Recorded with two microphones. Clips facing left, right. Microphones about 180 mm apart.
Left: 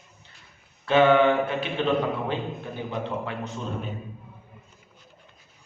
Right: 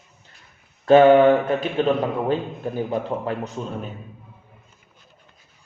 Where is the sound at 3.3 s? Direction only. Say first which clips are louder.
Right 5 dB; 40° right (ahead or behind).